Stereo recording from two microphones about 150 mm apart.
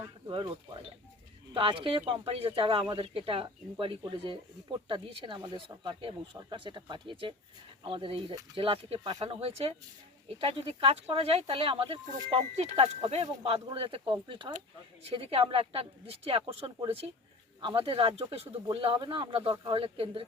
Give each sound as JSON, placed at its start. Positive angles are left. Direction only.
{"t": 0.3, "sound": "speech", "side_deg": -35}